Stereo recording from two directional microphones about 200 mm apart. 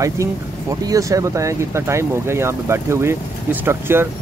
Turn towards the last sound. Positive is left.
turn(degrees=-10)  # may be behind; listen again after turning